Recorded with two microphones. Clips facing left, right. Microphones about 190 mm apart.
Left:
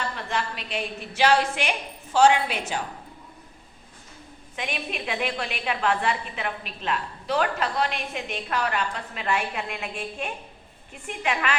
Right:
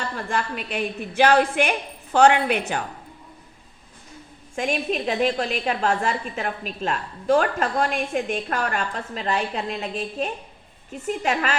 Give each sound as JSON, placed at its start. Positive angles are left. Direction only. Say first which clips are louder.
{"t": 0.2, "sound": "a woman's voice", "louder": "right 3 dB", "side_deg": -50}
{"t": 4.5, "sound": "a woman's voice", "louder": "right 8 dB", "side_deg": -45}